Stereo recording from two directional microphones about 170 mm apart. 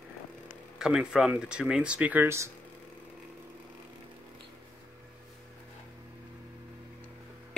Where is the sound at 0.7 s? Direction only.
5° right (ahead or behind).